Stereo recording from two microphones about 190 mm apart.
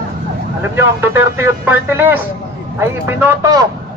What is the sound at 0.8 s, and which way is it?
Speech, 10° right (ahead or behind).